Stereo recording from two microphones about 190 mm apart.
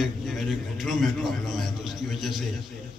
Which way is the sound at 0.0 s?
Centre (ahead or behind).